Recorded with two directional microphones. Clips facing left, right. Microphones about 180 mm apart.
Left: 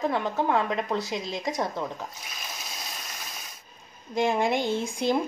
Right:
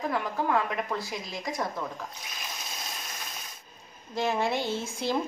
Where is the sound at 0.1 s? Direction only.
25° left (ahead or behind).